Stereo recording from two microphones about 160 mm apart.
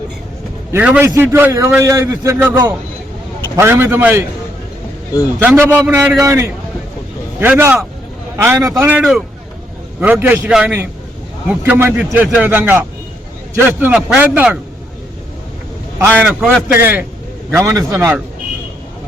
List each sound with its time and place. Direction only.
0.7 s a man's voice: 10° right (ahead or behind)
3.6 s a man's voice: 15° right (ahead or behind)
5.4 s a man's voice: 10° right (ahead or behind)
16.1 s a man's voice: 5° right (ahead or behind)